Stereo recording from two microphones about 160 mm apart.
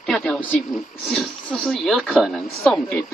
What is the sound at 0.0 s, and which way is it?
Speech, 5° left (ahead or behind).